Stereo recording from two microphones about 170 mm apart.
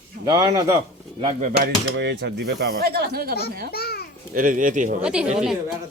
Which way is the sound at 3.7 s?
65° left (ahead or behind).